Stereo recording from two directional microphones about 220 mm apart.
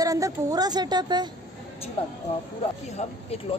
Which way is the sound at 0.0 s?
15° right (ahead or behind).